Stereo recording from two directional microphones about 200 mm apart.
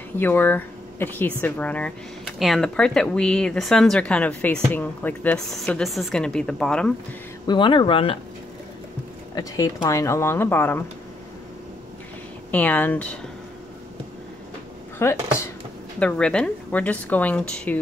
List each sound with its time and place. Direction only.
0.2 s speech: 10° left (ahead or behind)
7.4 s speech: 25° left (ahead or behind)
9.3 s a woman's voice: 15° left (ahead or behind)
12.4 s a woman's voice: 10° left (ahead or behind)
15.0 s a woman's voice: 15° left (ahead or behind)